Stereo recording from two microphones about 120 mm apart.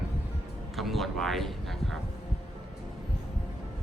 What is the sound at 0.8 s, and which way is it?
Speech, centre (ahead or behind).